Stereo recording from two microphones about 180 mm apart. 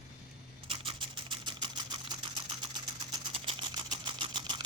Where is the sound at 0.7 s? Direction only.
30° right (ahead or behind).